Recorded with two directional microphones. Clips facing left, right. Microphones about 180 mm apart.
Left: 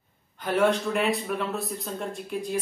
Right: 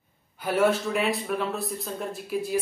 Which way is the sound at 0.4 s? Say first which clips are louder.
Even; 5° right (ahead or behind).